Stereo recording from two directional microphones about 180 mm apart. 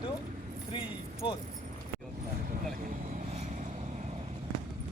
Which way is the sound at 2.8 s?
40° right (ahead or behind).